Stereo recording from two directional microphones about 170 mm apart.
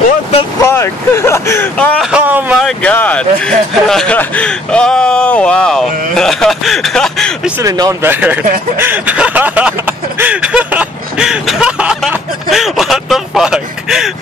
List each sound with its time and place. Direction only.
0.6 s speech: 15° left (ahead or behind)
2.0 s speech: 10° right (ahead or behind)
2.6 s a man's voice: 5° left (ahead or behind)
7.6 s speech: 20° right (ahead or behind)
8.1 s speech: 10° right (ahead or behind)
8.7 s a sound: 10° right (ahead or behind)